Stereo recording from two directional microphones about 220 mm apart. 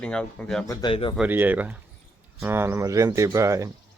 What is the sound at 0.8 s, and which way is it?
Speech, 25° left (ahead or behind).